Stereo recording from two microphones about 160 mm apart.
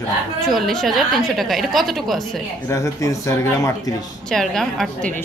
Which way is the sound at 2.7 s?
20° left (ahead or behind).